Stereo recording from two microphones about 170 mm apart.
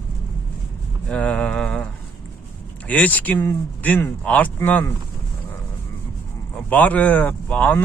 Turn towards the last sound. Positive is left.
turn(degrees=10)  # may be behind; listen again after turning